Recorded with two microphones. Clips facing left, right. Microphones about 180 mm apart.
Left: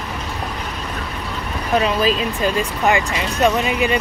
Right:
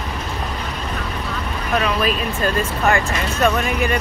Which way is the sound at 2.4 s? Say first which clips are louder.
Right 1 dB; 15° left (ahead or behind).